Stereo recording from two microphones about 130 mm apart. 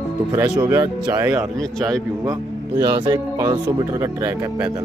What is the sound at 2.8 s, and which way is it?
Speech, 40° right (ahead or behind).